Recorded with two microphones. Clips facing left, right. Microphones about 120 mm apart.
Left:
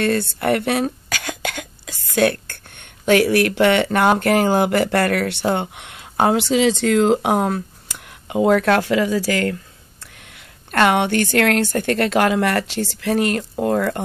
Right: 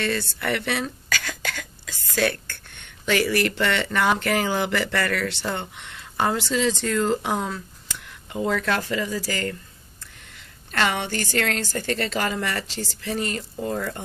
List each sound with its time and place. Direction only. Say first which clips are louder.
0.0 s a woman's voice: left 7 dB; 50° left (ahead or behind); by 9.6 s 65° left (ahead or behind)
10.7 s a woman's voice: left 8 dB; 55° left (ahead or behind)